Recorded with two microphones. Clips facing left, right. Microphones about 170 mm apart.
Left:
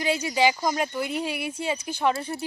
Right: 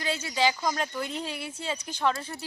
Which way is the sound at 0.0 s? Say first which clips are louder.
Left 4 dB; 15° left (ahead or behind).